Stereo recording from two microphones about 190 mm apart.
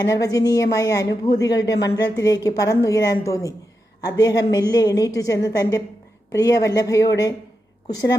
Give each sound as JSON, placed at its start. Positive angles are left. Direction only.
{"t": 0.0, "sound": "a woman's voice", "side_deg": 20}
{"t": 1.5, "sound": "speech", "side_deg": 65}
{"t": 1.8, "sound": "a woman's voice", "side_deg": 20}